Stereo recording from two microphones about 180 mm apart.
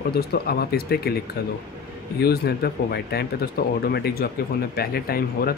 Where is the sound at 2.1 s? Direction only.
60° left (ahead or behind).